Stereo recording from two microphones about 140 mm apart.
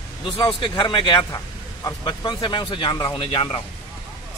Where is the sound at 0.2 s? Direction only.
35° left (ahead or behind).